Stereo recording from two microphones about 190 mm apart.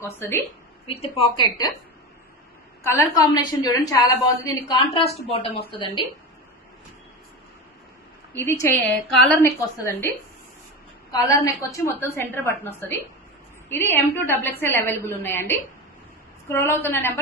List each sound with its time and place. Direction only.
0.0 s a woman's voice: 10° left (ahead or behind)
0.9 s a woman's voice: 30° left (ahead or behind)
2.8 s a woman's voice: 15° left (ahead or behind)
8.3 s a woman's voice: 10° left (ahead or behind)
11.1 s a woman's voice: 15° left (ahead or behind)